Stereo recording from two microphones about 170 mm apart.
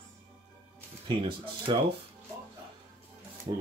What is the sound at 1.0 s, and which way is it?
Speech, 30° right (ahead or behind).